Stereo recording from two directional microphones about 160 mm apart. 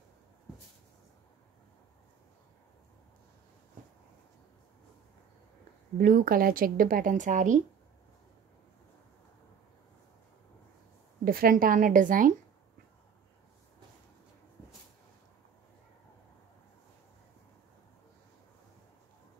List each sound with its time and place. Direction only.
5.9 s speech: 60° right (ahead or behind)
11.2 s speech: 65° right (ahead or behind)